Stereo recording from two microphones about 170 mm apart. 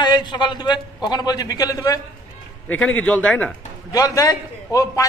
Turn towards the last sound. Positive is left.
turn(degrees=20)  # may be behind; listen again after turning